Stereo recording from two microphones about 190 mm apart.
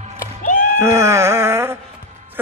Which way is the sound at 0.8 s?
15° right (ahead or behind).